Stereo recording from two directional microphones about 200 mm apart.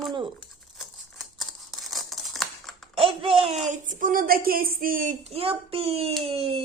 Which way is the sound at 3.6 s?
40° right (ahead or behind).